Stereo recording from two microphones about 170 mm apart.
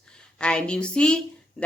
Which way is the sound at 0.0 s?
5° left (ahead or behind).